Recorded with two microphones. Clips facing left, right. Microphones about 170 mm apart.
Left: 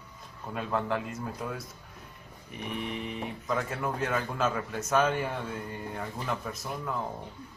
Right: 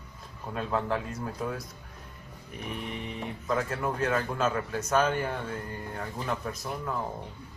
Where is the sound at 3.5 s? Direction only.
Centre (ahead or behind).